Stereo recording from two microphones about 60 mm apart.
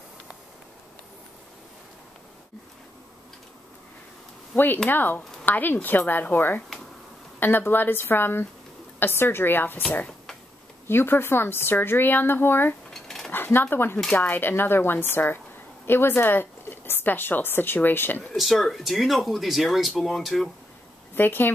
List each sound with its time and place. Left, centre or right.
4.8 s speech: left
9.8 s speech: left
10.9 s speech: left
12.9 s cutlery: centre
13.3 s a woman's voice: left
18.3 s speech: centre
21.1 s speech: left